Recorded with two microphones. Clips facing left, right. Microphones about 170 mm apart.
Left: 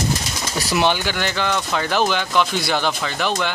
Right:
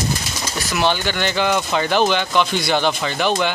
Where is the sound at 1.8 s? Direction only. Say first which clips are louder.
Right 2 dB; centre (ahead or behind).